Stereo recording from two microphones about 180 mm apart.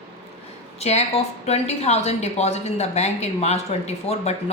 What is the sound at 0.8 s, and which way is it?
A woman's voice, 35° left (ahead or behind).